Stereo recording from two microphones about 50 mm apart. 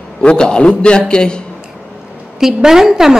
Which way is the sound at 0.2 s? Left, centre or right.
Centre.